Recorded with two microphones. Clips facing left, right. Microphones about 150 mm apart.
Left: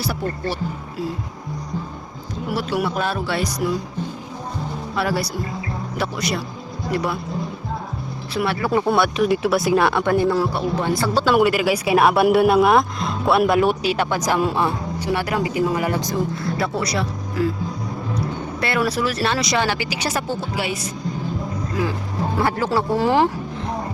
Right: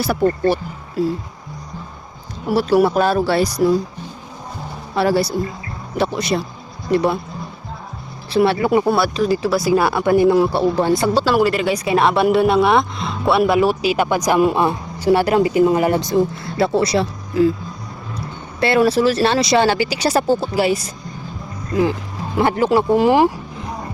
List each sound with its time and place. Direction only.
0.0 s speech: 55° right (ahead or behind)
2.5 s speech: 35° right (ahead or behind)
4.9 s speech: 30° right (ahead or behind)
8.3 s speech: 30° right (ahead or behind)
8.7 s speech: 5° right (ahead or behind)
10.5 s speech: 30° right (ahead or behind)
11.3 s speech: centre (ahead or behind)
15.0 s speech: 30° right (ahead or behind)
18.6 s speech: 30° right (ahead or behind)
22.4 s speech: 20° right (ahead or behind)